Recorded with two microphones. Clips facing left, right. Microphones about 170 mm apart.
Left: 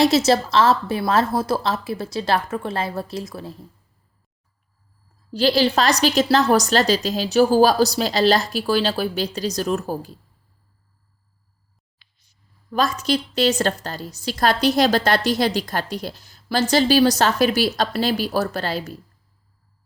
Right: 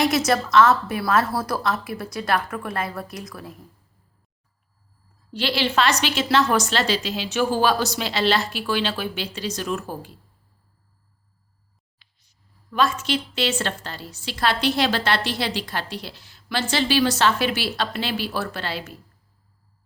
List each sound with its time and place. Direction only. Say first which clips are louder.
0.0 s a woman's voice: left 4 dB; 25° left (ahead or behind)
5.3 s a woman's voice: left 6 dB; 40° left (ahead or behind)
12.7 s a woman's voice: left 2 dB; 40° left (ahead or behind)